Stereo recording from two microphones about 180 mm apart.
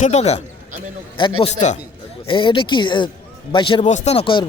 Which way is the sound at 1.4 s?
40° left (ahead or behind).